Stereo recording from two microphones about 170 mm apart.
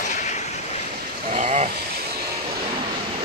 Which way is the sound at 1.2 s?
40° right (ahead or behind).